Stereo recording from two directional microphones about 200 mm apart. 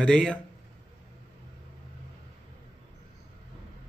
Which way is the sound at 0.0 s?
5° left (ahead or behind).